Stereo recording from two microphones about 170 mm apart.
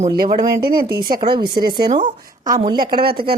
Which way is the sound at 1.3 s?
25° right (ahead or behind).